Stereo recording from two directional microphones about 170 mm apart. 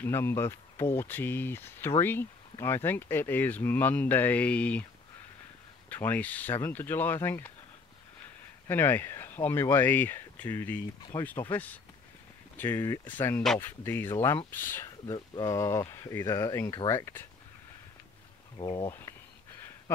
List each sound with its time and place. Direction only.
0.0 s speech: 15° left (ahead or behind)
5.9 s speech: 10° left (ahead or behind)
8.6 s speech: 10° left (ahead or behind)
11.0 s speech: 25° left (ahead or behind)
11.2 s speech: 10° left (ahead or behind)
18.6 s speech: 30° left (ahead or behind)
18.9 s a sound: 15° left (ahead or behind)